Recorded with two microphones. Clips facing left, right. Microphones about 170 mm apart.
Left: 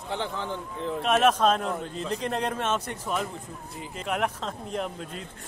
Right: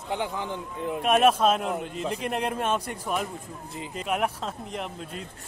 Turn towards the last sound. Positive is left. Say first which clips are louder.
# left 2 dB
turn(degrees=-10)  # may be behind; listen again after turning